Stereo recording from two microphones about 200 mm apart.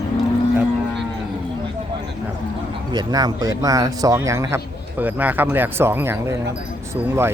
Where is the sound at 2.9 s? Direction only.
20° right (ahead or behind).